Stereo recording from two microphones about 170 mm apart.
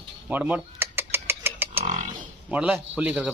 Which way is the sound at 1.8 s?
45° right (ahead or behind).